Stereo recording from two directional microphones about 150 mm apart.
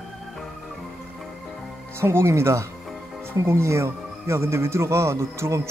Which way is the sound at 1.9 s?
15° right (ahead or behind).